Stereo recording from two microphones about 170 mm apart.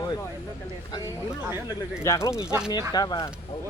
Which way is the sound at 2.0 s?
15° left (ahead or behind).